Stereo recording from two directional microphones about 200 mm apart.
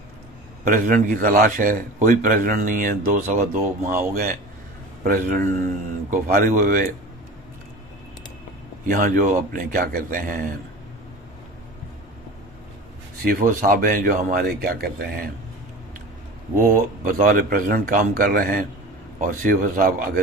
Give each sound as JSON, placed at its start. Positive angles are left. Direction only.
{"t": 0.7, "sound": "speech", "side_deg": -40}
{"t": 8.8, "sound": "speech", "side_deg": -40}
{"t": 13.2, "sound": "speech", "side_deg": -45}
{"t": 16.7, "sound": "speech", "side_deg": -45}